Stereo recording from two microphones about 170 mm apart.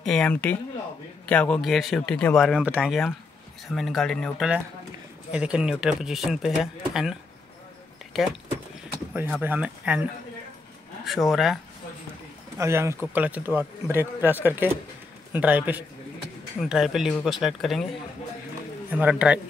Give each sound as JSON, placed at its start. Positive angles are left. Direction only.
{"t": 0.0, "sound": "speech", "side_deg": 5}
{"t": 9.4, "sound": "speech", "side_deg": -10}
{"t": 11.1, "sound": "speech", "side_deg": 0}
{"t": 12.5, "sound": "speech", "side_deg": -15}
{"t": 18.9, "sound": "speech", "side_deg": -10}